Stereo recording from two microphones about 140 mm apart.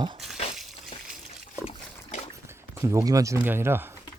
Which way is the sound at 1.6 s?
55° left (ahead or behind).